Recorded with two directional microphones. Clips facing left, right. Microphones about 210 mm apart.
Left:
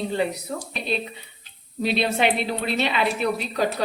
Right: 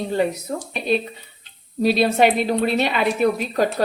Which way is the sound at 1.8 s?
45° right (ahead or behind).